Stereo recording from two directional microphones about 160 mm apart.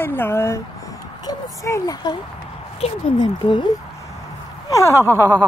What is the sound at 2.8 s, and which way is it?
Speech, 40° left (ahead or behind).